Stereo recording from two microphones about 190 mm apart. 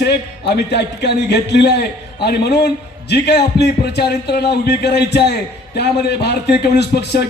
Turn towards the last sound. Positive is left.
turn(degrees=60)  # may be behind; listen again after turning